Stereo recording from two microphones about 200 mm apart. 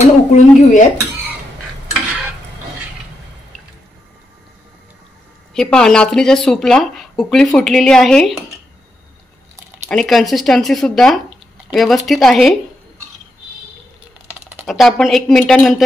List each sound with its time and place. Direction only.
0.0 s speech: 35° left (ahead or behind)
5.5 s speech: 5° left (ahead or behind)
9.8 s speech: centre (ahead or behind)
14.5 s speech: 5° right (ahead or behind)